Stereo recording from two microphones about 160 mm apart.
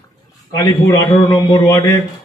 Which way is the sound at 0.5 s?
25° left (ahead or behind).